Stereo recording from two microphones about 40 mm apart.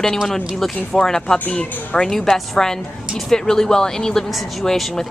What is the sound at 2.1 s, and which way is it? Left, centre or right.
Speech, centre.